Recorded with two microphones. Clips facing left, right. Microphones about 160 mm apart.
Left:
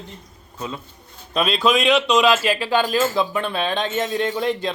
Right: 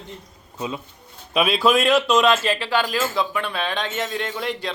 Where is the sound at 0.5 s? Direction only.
15° right (ahead or behind).